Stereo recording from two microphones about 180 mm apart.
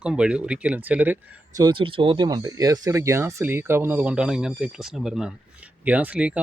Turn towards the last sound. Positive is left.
turn(degrees=-5)  # may be behind; listen again after turning